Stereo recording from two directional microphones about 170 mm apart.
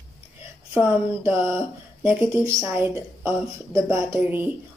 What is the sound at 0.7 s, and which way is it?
A woman's voice, 10° right (ahead or behind).